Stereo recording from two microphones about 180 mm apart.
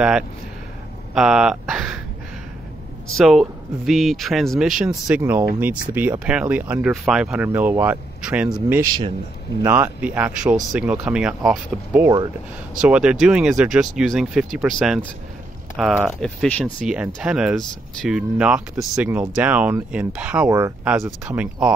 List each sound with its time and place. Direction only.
1.1 s a sound: 5° right (ahead or behind)
3.2 s speech: centre (ahead or behind)
8.8 s a man's voice: 20° right (ahead or behind); by 15.0 s centre (ahead or behind)
16.1 s speech: 5° left (ahead or behind)
16.9 s speech: 5° right (ahead or behind)